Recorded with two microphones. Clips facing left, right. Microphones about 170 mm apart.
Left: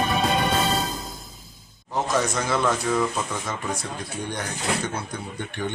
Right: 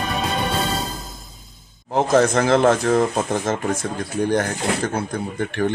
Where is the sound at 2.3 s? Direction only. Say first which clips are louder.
Right 8 dB; 60° right (ahead or behind).